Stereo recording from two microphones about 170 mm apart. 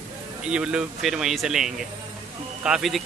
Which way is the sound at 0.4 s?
5° right (ahead or behind).